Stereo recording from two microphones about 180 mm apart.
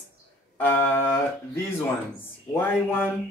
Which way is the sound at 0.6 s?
10° left (ahead or behind).